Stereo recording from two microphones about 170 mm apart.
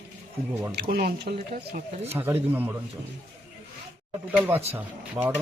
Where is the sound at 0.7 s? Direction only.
70° right (ahead or behind).